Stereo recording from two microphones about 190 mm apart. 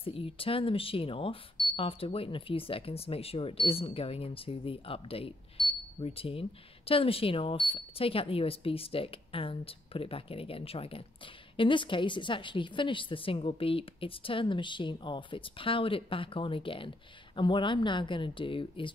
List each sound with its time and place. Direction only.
0.0 s speech: 30° left (ahead or behind)